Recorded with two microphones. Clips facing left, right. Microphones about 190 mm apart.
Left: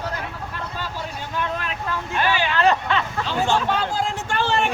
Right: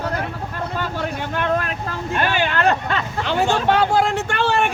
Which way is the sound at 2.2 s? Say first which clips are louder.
Even; 55° right (ahead or behind).